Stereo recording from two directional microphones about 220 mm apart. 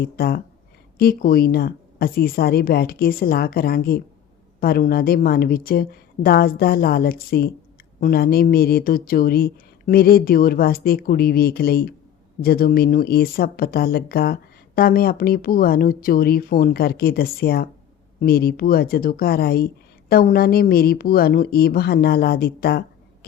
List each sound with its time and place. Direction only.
0.0 s speech: 45° left (ahead or behind)